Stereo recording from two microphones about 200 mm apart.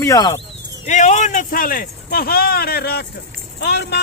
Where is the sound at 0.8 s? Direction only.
35° left (ahead or behind); by 4.0 s 55° left (ahead or behind).